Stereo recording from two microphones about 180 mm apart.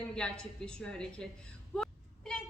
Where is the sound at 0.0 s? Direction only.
5° left (ahead or behind).